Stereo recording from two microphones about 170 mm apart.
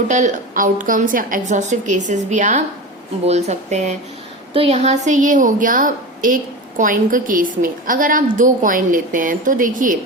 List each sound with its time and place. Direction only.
0.1 s a woman's voice: 50° right (ahead or behind)